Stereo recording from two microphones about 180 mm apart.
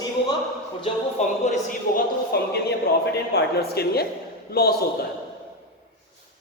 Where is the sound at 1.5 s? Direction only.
50° left (ahead or behind).